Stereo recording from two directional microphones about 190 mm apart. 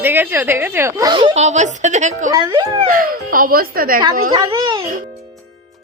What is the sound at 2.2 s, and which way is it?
Speech, 20° right (ahead or behind).